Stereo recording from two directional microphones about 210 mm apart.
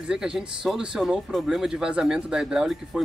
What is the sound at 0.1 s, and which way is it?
Speech, 5° right (ahead or behind).